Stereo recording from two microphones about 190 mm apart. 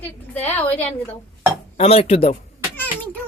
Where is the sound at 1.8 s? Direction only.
30° left (ahead or behind).